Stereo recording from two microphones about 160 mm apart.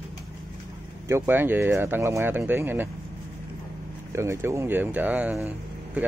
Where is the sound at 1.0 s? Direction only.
15° right (ahead or behind).